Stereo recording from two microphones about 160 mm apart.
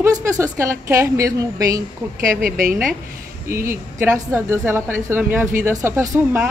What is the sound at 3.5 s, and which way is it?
Speech, 15° right (ahead or behind).